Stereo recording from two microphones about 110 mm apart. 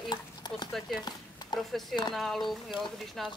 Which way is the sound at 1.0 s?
40° left (ahead or behind).